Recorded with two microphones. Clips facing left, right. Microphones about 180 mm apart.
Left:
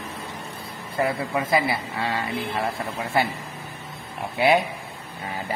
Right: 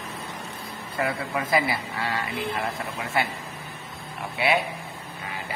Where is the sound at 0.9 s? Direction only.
25° left (ahead or behind).